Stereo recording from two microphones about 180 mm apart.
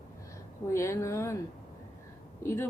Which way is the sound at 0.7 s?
15° left (ahead or behind).